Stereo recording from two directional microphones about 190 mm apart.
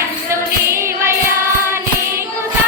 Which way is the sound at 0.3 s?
15° right (ahead or behind).